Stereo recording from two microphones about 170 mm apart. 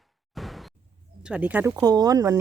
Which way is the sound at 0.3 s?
Centre (ahead or behind).